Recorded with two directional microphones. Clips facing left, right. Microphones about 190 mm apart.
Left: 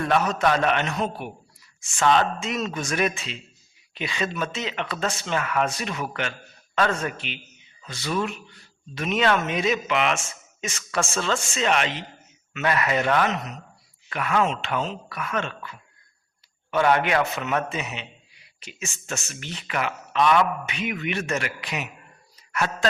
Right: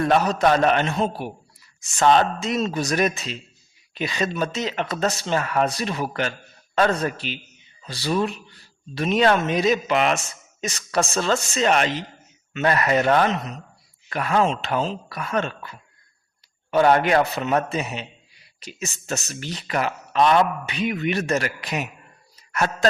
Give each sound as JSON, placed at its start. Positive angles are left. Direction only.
{"t": 0.0, "sound": "speech", "side_deg": -35}